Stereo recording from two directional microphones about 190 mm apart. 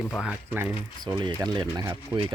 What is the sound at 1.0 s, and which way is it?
Speech, 20° right (ahead or behind).